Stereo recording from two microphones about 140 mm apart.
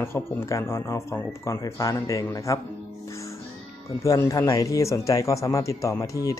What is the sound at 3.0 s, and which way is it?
Music, 20° left (ahead or behind).